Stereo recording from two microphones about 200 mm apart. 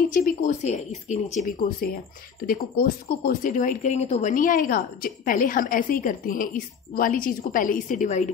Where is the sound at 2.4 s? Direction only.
45° left (ahead or behind).